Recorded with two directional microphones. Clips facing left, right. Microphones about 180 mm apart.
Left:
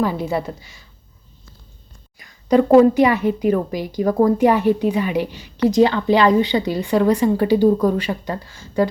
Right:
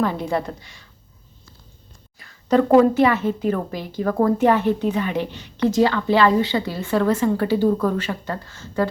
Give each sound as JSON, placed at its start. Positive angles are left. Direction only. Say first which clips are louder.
{"t": 0.0, "sound": "speech", "louder": "left 1 dB", "side_deg": 5}
{"t": 2.1, "sound": "speech", "louder": "left 2 dB", "side_deg": 15}